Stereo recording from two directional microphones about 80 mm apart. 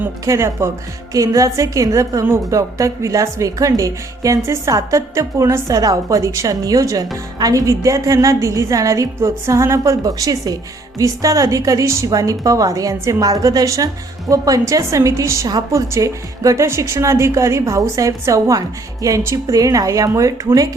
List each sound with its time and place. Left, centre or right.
0.3 s a woman's voice: right
1.1 s a woman's voice: right
10.0 s a woman's voice: right